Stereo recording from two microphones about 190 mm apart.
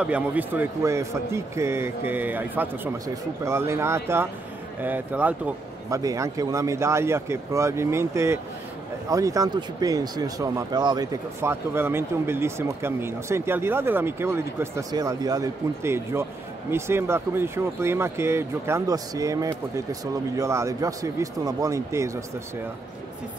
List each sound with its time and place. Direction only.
0.0 s speech: 5° right (ahead or behind)